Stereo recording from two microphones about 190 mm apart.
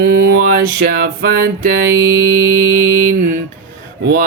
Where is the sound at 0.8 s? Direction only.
50° right (ahead or behind).